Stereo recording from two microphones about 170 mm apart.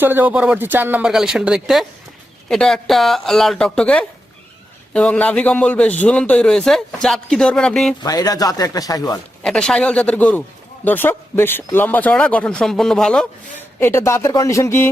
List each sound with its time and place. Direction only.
0.0 s speech: 10° right (ahead or behind)
8.0 s speech: 20° left (ahead or behind)
9.4 s speech: 5° left (ahead or behind)
13.7 s speech: 15° left (ahead or behind)